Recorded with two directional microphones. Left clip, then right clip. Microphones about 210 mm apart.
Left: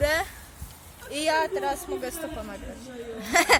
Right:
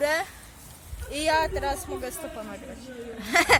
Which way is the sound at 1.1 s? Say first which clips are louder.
Even; 5° right (ahead or behind).